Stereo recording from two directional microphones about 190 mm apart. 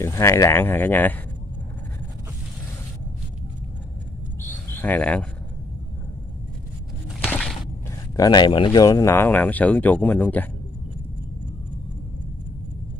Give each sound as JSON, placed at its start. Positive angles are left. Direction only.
{"t": 0.0, "sound": "speech", "side_deg": 15}
{"t": 4.6, "sound": "cricket", "side_deg": 10}
{"t": 7.2, "sound": "a sound", "side_deg": 5}
{"t": 8.2, "sound": "speech", "side_deg": 25}